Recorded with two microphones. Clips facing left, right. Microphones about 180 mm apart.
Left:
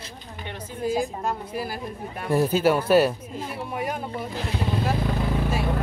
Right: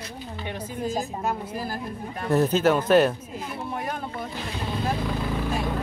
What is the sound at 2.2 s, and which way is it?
Speech, 10° left (ahead or behind).